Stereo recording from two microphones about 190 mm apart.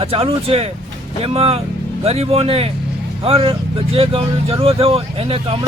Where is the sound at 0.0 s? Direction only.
30° right (ahead or behind).